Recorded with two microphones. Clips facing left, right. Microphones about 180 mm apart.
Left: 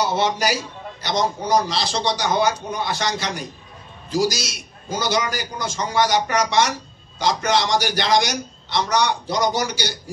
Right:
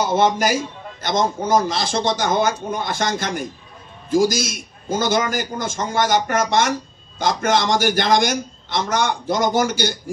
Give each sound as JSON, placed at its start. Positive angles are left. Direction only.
{"t": 0.0, "sound": "a man's voice", "side_deg": -50}